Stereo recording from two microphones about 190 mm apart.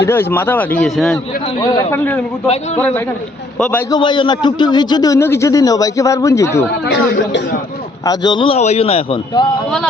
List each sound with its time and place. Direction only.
0.0 s a man's voice: 10° left (ahead or behind)
1.5 s a man's voice: 20° left (ahead or behind)
2.0 s a man's voice: 10° left (ahead or behind)
3.8 s a man's voice: 25° left (ahead or behind)
6.8 s speech: 60° left (ahead or behind)
8.0 s a man's voice: 20° left (ahead or behind)